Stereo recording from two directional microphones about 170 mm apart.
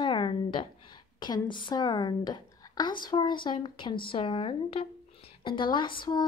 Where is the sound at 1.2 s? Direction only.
25° left (ahead or behind).